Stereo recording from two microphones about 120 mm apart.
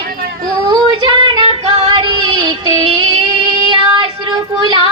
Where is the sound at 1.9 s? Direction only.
40° right (ahead or behind).